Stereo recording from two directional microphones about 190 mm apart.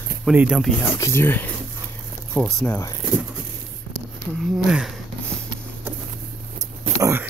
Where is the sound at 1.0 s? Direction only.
15° left (ahead or behind).